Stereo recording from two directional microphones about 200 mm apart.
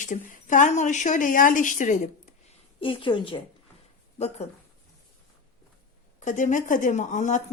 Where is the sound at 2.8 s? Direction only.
25° left (ahead or behind).